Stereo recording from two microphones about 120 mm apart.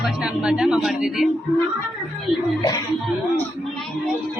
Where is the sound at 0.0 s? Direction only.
5° right (ahead or behind).